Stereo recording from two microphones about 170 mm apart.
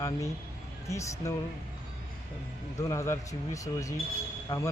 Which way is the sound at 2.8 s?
15° left (ahead or behind).